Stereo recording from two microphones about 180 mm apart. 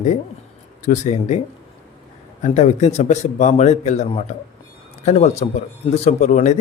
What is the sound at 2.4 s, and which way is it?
Speech, 40° left (ahead or behind).